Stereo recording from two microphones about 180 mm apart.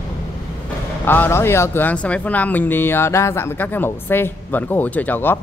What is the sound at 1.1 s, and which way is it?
Speech, 10° left (ahead or behind).